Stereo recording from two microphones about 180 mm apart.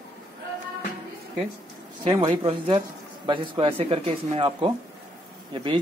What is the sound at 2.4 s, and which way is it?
A man's voice, 30° right (ahead or behind).